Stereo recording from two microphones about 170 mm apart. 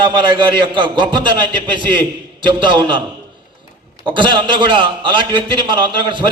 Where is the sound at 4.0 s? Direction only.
30° right (ahead or behind).